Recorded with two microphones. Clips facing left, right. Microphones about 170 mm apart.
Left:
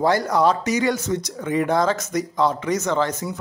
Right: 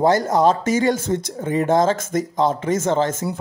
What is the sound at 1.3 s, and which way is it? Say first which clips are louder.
Speech: right 2 dB; 25° right (ahead or behind).